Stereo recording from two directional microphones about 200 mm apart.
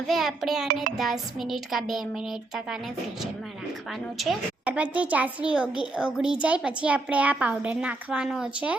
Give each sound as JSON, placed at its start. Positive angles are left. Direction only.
{"t": 0.1, "sound": "a woman's voice", "side_deg": 0}
{"t": 4.2, "sound": "a woman's voice", "side_deg": -5}